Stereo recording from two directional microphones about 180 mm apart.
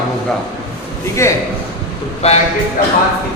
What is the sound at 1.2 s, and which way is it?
Speech, 15° left (ahead or behind).